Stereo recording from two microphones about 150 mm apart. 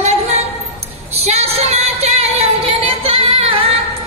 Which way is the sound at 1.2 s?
45° right (ahead or behind).